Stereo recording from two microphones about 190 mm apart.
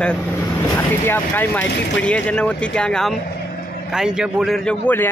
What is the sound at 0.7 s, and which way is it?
A man's voice, 10° left (ahead or behind).